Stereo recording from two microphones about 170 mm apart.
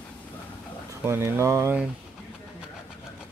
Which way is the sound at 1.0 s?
15° right (ahead or behind).